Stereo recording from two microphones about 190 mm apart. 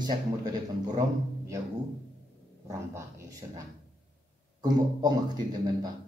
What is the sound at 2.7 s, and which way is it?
Speech, 15° right (ahead or behind).